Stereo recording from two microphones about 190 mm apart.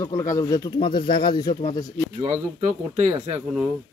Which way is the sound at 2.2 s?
40° right (ahead or behind).